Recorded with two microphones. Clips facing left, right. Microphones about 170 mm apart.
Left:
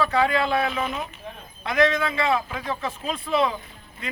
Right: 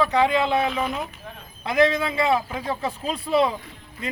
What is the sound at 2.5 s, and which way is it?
Speech, 35° right (ahead or behind).